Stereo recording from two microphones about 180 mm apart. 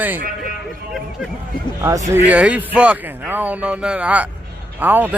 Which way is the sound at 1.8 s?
15° right (ahead or behind).